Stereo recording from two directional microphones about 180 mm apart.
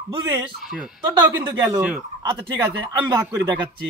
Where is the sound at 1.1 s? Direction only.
25° right (ahead or behind).